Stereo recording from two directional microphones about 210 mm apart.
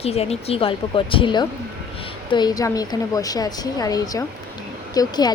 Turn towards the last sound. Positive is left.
turn(degrees=20)  # may be behind; listen again after turning